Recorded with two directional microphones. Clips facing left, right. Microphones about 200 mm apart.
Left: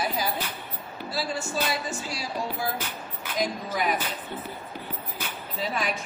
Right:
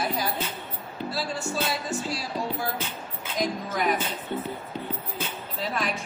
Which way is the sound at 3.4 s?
Centre (ahead or behind).